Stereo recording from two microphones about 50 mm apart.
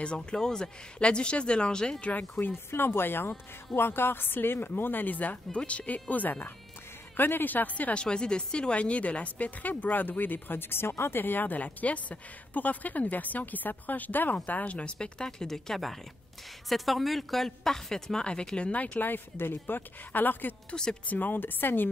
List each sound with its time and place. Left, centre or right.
0.0 s speech: centre
2.0 s a woman's voice: left
2.7 s a woman's voice: left
7.2 s a woman's voice: left
7.9 s a woman's voice: centre
18.7 s a woman's voice: left
20.7 s speech: centre
21.1 s a woman's voice: left